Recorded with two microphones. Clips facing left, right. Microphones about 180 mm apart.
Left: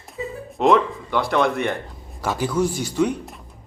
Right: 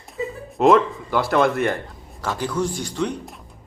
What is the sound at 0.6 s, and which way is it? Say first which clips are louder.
A man's voice: right 2 dB; centre (ahead or behind).